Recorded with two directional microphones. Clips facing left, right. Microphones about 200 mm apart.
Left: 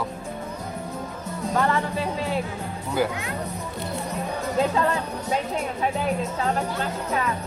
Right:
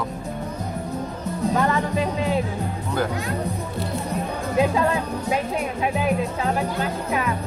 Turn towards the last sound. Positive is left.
turn(degrees=-15)  # may be behind; listen again after turning